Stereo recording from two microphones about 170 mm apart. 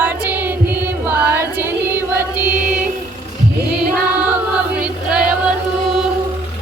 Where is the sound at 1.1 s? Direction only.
15° right (ahead or behind).